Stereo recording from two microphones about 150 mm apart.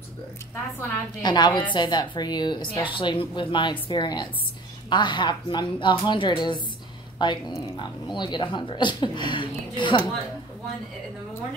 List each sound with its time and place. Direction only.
1.2 s a woman's voice: 30° left (ahead or behind)